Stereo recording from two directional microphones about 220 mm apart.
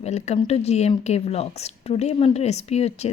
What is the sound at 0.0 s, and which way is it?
A woman's voice, 30° left (ahead or behind).